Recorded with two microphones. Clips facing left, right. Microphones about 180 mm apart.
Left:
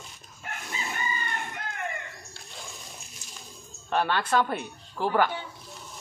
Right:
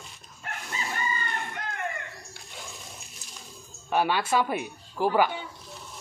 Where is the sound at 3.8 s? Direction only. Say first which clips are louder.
Right 1 dB; 10° right (ahead or behind).